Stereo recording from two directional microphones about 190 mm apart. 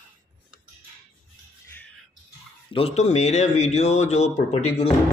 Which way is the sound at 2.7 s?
30° left (ahead or behind).